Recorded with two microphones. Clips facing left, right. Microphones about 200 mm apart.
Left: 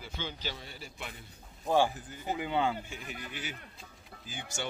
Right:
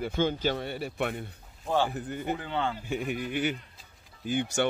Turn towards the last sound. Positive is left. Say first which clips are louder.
# right 13 dB
turn(degrees=-60)  # may be behind; listen again after turning